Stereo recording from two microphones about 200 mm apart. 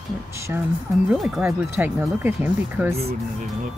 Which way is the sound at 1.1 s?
5° right (ahead or behind).